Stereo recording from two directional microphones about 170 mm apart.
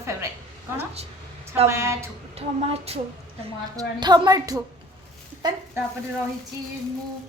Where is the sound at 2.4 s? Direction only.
35° right (ahead or behind).